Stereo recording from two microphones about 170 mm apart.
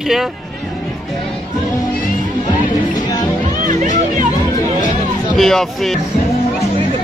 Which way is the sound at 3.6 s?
50° right (ahead or behind).